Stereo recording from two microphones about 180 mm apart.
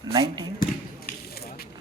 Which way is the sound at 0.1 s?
25° right (ahead or behind).